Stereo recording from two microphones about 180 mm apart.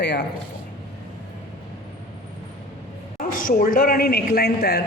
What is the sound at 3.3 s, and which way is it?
Speech, 50° left (ahead or behind).